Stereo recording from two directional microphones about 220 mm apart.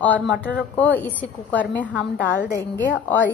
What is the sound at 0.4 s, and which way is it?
A woman's voice, 5° left (ahead or behind).